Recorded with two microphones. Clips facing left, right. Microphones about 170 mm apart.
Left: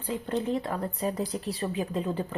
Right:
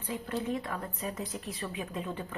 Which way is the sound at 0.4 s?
30° left (ahead or behind).